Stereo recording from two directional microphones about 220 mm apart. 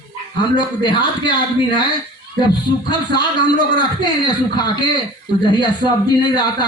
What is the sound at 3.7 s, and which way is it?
A man's voice, 20° left (ahead or behind).